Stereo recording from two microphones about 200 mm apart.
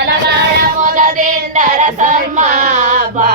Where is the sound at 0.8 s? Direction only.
40° right (ahead or behind).